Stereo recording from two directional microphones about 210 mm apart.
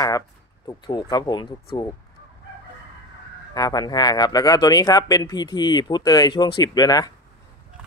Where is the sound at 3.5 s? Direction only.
20° left (ahead or behind).